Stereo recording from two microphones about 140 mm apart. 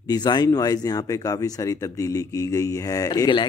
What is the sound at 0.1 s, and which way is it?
Speech, 30° left (ahead or behind).